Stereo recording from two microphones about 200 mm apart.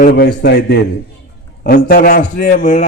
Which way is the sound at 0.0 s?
50° left (ahead or behind).